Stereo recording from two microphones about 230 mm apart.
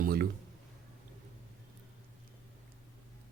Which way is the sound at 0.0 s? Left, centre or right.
Right.